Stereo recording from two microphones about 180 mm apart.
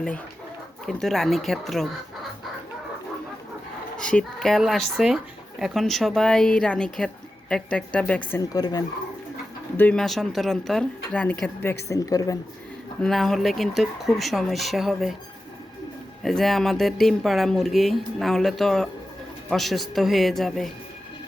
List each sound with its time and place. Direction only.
0.9 s speech: centre (ahead or behind)
3.9 s speech: 5° left (ahead or behind)
8.4 s speech: 20° left (ahead or behind)
9.7 s speech: 5° left (ahead or behind)
13.0 s speech: centre (ahead or behind)
16.2 s speech: centre (ahead or behind)